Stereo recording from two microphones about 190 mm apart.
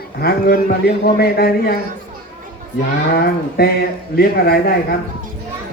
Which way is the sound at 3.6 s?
55° left (ahead or behind).